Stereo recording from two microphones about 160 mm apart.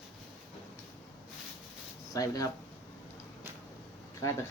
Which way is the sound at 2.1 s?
20° left (ahead or behind).